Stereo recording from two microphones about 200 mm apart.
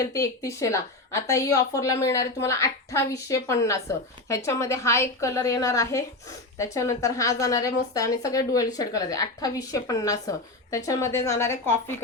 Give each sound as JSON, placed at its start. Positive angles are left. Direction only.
{"t": 0.0, "sound": "a woman's voice", "side_deg": 15}